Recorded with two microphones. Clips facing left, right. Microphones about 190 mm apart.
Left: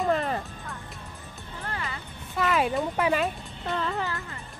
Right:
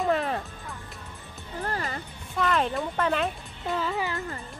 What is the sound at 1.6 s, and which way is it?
Music, 40° right (ahead or behind).